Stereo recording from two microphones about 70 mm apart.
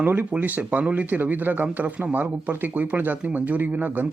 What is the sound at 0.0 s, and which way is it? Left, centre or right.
Speech, right.